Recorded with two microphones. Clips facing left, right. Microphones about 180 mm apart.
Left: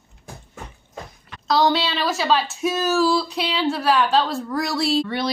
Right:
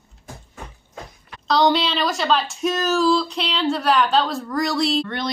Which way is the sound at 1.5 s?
5° left (ahead or behind).